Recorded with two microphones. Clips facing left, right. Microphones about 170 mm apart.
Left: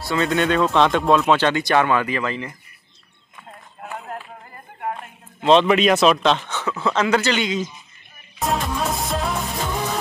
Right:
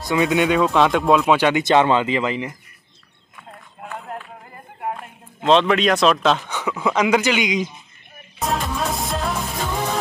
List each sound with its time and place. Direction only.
0.0 s speech: 15° right (ahead or behind)
1.6 s speech: 20° right (ahead or behind)
4.9 s a man's voice: centre (ahead or behind)
8.4 s music: centre (ahead or behind)